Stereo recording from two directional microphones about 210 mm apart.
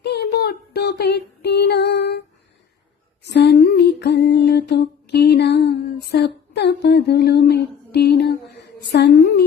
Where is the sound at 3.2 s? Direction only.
55° left (ahead or behind).